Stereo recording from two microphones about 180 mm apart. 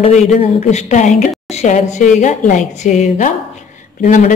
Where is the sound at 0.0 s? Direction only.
40° left (ahead or behind).